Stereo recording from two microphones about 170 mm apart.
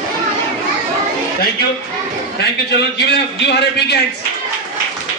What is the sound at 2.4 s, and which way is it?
A man's voice, 75° left (ahead or behind).